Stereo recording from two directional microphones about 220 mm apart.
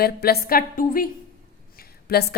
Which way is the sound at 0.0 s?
45° left (ahead or behind).